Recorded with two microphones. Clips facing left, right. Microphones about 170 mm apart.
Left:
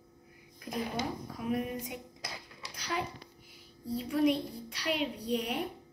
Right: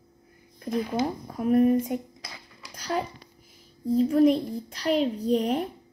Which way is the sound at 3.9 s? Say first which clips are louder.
Right 9 dB; 40° right (ahead or behind).